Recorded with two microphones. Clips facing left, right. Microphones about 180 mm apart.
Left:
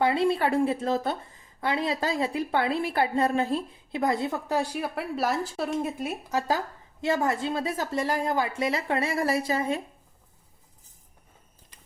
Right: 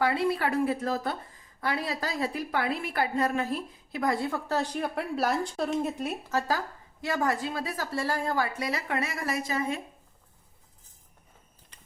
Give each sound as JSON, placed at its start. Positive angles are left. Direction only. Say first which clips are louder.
{"t": 0.0, "sound": "a woman's voice", "louder": "left 3 dB", "side_deg": 25}
{"t": 7.0, "sound": "a woman's voice", "louder": "left 3 dB", "side_deg": 25}